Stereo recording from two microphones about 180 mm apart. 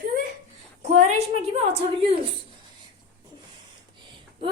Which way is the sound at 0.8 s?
35° right (ahead or behind).